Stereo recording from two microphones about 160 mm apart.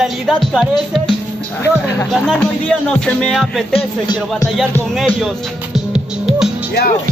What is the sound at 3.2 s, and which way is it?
Music, centre (ahead or behind).